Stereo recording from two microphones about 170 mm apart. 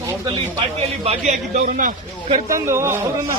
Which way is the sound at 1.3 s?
50° right (ahead or behind).